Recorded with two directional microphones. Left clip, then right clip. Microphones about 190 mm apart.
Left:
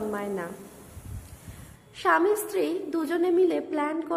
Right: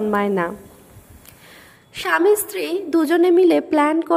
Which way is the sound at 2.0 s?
45° right (ahead or behind).